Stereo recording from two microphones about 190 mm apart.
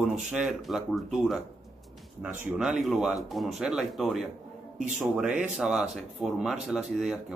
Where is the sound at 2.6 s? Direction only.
Centre (ahead or behind).